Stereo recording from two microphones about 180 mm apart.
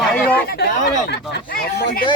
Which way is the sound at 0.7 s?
45° left (ahead or behind).